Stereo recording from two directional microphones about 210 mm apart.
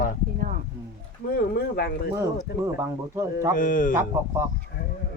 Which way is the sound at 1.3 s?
50° left (ahead or behind).